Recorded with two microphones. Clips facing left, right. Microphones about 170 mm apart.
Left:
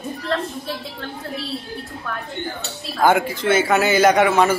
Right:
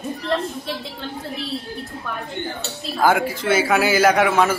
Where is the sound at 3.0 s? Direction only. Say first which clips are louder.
Left 1 dB; 10° right (ahead or behind).